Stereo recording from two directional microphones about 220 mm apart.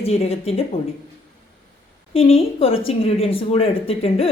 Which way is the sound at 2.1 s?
25° left (ahead or behind).